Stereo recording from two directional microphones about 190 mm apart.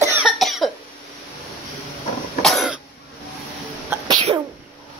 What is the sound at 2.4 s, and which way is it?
Cough, centre (ahead or behind).